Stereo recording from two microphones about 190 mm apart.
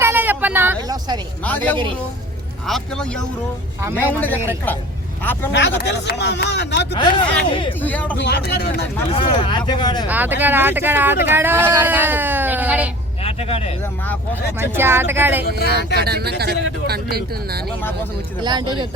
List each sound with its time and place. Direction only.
0.0 s a sound: 10° right (ahead or behind)
1.5 s a man's voice: 10° left (ahead or behind)
5.5 s speech: 65° left (ahead or behind)
6.9 s speech: 25° left (ahead or behind)
7.8 s speech: 10° left (ahead or behind)
8.2 s speech: 60° left (ahead or behind)
9.1 s speech: 25° left (ahead or behind)
10.1 s speech: 10° right (ahead or behind)
13.2 s speech: 30° left (ahead or behind)
14.6 s speech: 10° right (ahead or behind)
16.0 s speech: 55° right (ahead or behind)
18.4 s speech: 25° right (ahead or behind)